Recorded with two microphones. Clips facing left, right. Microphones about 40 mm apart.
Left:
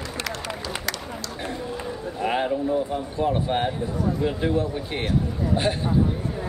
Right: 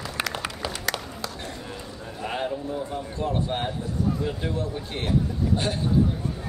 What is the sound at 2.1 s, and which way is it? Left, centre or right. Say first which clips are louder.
A man's voice: left 5 dB; centre.